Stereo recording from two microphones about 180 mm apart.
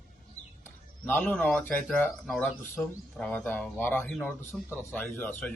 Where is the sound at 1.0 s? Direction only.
10° left (ahead or behind).